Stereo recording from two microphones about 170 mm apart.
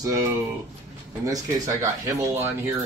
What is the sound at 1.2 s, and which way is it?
Speech, 20° right (ahead or behind).